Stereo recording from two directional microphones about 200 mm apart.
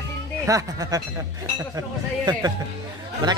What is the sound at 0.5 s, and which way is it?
Speech, 15° right (ahead or behind).